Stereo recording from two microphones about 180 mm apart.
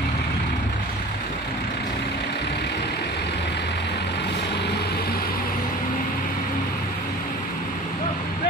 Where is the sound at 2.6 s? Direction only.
70° left (ahead or behind).